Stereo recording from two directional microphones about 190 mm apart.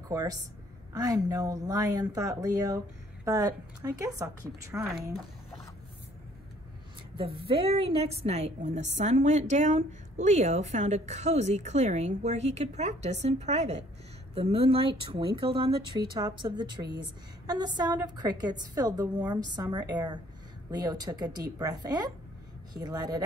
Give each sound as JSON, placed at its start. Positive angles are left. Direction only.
{"t": 0.1, "sound": "a woman's voice", "side_deg": -20}
{"t": 7.2, "sound": "a woman's voice", "side_deg": -30}